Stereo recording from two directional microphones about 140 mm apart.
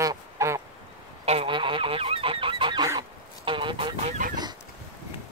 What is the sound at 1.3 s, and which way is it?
Goose, 40° right (ahead or behind).